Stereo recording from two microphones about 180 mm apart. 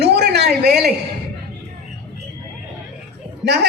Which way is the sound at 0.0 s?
65° right (ahead or behind).